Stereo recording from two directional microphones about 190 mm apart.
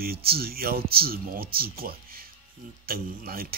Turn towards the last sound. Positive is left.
turn(degrees=-50)  # may be behind; listen again after turning